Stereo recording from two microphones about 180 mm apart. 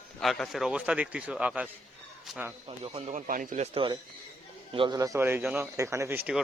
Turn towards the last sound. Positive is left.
turn(degrees=-10)  # may be behind; listen again after turning